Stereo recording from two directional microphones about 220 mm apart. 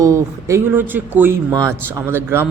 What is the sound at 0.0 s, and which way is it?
A man's voice, 15° right (ahead or behind).